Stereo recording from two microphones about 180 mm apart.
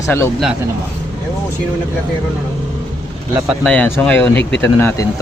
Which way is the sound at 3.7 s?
10° left (ahead or behind).